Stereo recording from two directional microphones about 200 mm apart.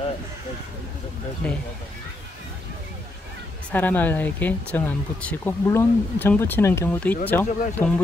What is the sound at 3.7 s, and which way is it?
Speech, 10° left (ahead or behind).